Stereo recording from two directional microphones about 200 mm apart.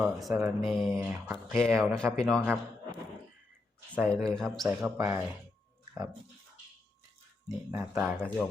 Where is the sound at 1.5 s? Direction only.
Centre (ahead or behind).